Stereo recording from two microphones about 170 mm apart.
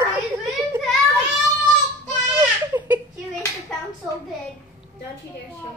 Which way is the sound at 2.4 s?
10° right (ahead or behind).